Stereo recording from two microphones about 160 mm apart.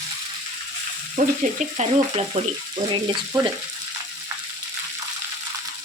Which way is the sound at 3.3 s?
20° right (ahead or behind).